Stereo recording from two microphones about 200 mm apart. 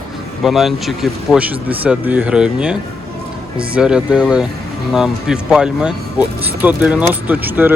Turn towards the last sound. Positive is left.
turn(degrees=-10)  # may be behind; listen again after turning